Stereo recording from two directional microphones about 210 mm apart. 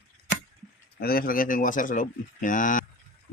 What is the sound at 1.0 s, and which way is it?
Speech, 45° left (ahead or behind).